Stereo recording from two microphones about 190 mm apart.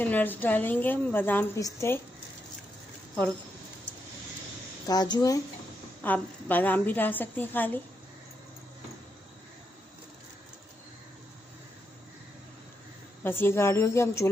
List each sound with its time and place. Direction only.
0.0 s a woman's voice: 10° left (ahead or behind)
4.8 s speech: 20° left (ahead or behind)
6.0 s a woman's voice: 10° left (ahead or behind)
13.2 s a woman's voice: 10° left (ahead or behind)